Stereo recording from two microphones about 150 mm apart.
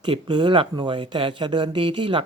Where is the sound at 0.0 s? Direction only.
30° right (ahead or behind).